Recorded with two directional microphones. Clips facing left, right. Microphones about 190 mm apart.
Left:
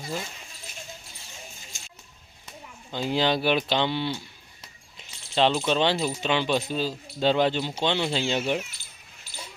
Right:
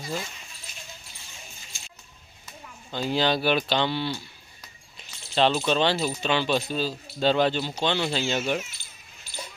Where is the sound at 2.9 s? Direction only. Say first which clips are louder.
Even; 20° left (ahead or behind).